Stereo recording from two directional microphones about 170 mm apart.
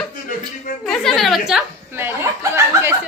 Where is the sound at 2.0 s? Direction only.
15° right (ahead or behind).